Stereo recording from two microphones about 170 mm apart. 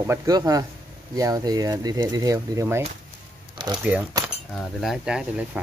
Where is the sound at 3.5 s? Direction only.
25° right (ahead or behind).